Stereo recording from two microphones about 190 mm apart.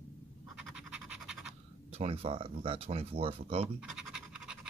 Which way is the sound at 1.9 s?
30° right (ahead or behind).